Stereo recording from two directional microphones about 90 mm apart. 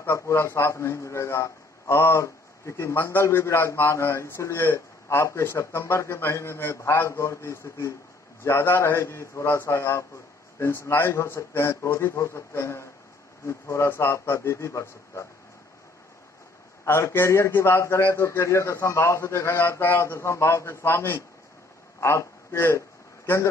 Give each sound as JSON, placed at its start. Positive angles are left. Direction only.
{"t": 0.0, "sound": "a man's voice", "side_deg": 30}
{"t": 16.8, "sound": "a man's voice", "side_deg": 30}
{"t": 22.0, "sound": "a sound", "side_deg": 30}